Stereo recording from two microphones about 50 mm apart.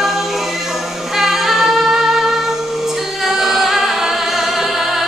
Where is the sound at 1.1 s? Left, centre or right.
Centre.